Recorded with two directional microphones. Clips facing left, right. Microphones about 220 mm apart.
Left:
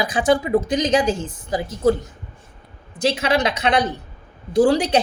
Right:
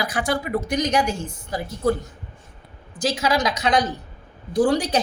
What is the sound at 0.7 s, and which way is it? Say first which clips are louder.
Speech: left 3 dB; 90° left.